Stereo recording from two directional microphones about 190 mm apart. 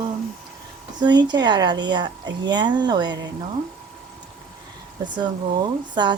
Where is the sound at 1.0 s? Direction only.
20° right (ahead or behind).